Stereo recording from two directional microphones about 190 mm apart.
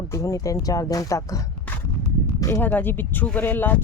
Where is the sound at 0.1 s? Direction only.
15° left (ahead or behind).